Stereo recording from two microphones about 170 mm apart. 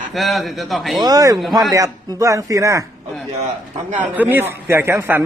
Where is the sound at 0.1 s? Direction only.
Centre (ahead or behind).